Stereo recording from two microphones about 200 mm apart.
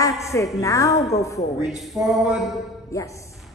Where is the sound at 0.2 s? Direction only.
15° left (ahead or behind).